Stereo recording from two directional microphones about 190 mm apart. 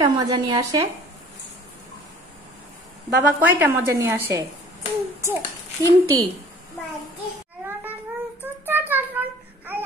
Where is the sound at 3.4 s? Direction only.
10° right (ahead or behind).